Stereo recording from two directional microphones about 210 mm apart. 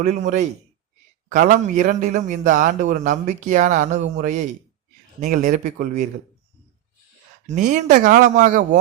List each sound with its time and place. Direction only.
0.0 s a man's voice: 35° right (ahead or behind)
5.2 s a man's voice: 40° right (ahead or behind)
7.4 s a man's voice: 35° right (ahead or behind)